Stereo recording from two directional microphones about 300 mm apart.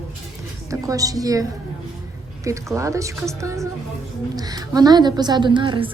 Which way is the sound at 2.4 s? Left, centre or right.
Centre.